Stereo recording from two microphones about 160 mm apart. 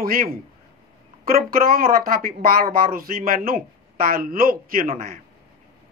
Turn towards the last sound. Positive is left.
turn(degrees=-65)  # may be behind; listen again after turning